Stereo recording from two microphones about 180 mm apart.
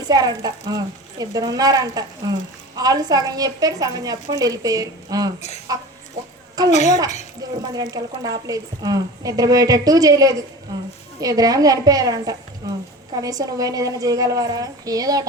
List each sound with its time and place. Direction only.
0.1 s a woman's voice: 20° right (ahead or behind)
6.7 s a woman's voice: 40° left (ahead or behind)
7.6 s a woman's voice: 20° right (ahead or behind)